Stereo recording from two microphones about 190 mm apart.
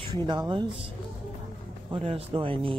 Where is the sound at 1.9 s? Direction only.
30° right (ahead or behind).